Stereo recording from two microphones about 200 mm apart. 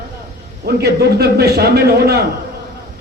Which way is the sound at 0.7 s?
50° right (ahead or behind).